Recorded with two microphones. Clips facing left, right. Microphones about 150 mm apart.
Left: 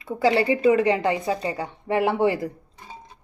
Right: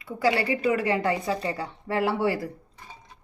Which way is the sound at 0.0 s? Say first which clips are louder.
Left 4 dB; 25° left (ahead or behind).